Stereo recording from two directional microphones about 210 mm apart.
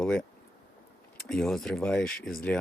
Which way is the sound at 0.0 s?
Centre (ahead or behind).